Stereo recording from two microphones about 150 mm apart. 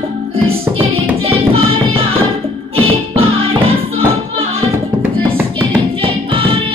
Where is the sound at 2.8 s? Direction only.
40° right (ahead or behind).